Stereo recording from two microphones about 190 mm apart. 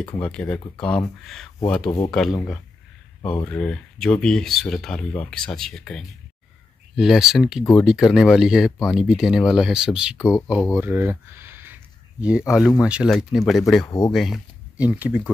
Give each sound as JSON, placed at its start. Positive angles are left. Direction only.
{"t": 0.2, "sound": "speech", "side_deg": 5}
{"t": 10.8, "sound": "speech", "side_deg": -10}
{"t": 13.8, "sound": "speech", "side_deg": 20}
{"t": 14.1, "sound": "speech", "side_deg": 0}